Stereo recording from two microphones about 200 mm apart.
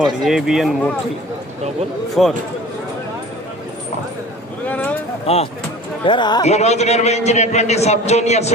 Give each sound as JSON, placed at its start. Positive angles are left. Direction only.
{"t": 0.0, "sound": "speech", "side_deg": 0}
{"t": 2.2, "sound": "speech", "side_deg": 0}
{"t": 4.7, "sound": "a sound", "side_deg": 5}
{"t": 5.2, "sound": "speech", "side_deg": 30}
{"t": 6.4, "sound": "a man's voice", "side_deg": 35}